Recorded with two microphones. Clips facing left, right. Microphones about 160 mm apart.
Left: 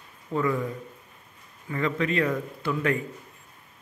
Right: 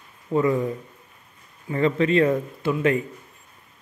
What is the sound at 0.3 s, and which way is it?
Speech, 25° right (ahead or behind).